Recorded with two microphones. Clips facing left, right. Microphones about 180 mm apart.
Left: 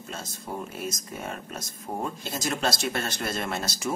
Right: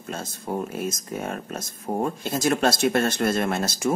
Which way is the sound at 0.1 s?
50° right (ahead or behind).